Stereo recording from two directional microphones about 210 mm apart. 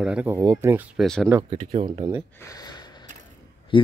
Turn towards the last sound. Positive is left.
turn(degrees=25)  # may be behind; listen again after turning